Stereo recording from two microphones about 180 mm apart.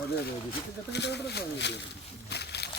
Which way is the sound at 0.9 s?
70° left (ahead or behind).